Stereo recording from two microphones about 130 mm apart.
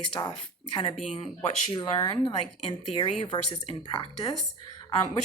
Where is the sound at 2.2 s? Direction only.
45° left (ahead or behind).